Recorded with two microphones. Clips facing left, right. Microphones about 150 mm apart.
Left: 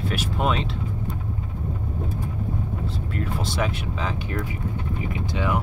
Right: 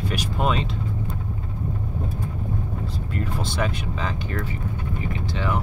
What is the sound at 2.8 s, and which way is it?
Speech, centre (ahead or behind).